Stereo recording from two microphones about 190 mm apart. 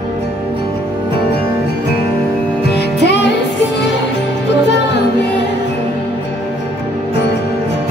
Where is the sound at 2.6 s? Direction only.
65° left (ahead or behind).